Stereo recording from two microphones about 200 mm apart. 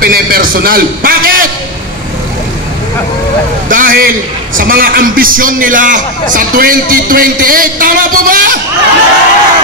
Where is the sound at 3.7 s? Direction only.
45° right (ahead or behind).